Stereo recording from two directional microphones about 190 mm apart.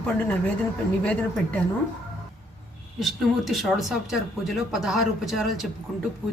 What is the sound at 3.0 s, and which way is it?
Speech, centre (ahead or behind).